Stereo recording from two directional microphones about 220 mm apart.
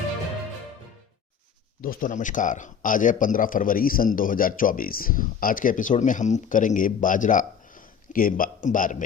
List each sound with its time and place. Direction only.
1.8 s a man's voice: 40° left (ahead or behind)